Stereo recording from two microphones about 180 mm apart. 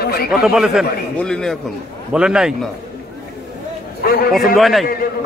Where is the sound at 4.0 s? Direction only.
55° left (ahead or behind).